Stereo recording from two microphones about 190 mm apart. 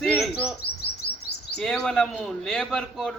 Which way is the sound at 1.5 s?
5° left (ahead or behind).